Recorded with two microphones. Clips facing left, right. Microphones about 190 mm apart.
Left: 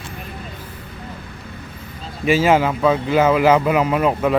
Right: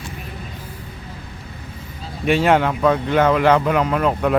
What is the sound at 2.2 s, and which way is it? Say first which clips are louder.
Speech: left 1 dB; centre (ahead or behind).